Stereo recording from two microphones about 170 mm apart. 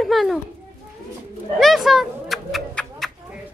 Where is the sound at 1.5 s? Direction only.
Centre (ahead or behind).